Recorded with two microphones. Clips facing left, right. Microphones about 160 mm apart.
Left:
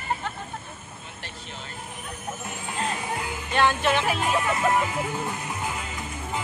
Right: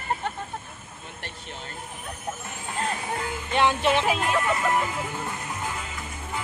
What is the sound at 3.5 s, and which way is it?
Music, 20° right (ahead or behind).